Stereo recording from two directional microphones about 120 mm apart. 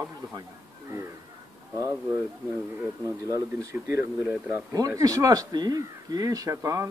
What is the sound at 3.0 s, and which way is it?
Speech, 30° right (ahead or behind).